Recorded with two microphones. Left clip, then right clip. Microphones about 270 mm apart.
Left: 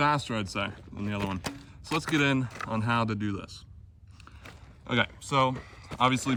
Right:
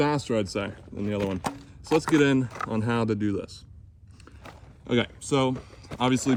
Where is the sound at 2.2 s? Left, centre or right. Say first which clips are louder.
Right 4 dB; centre.